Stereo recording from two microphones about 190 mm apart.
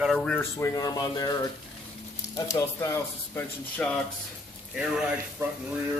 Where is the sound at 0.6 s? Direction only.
20° left (ahead or behind); by 5.1 s 5° right (ahead or behind).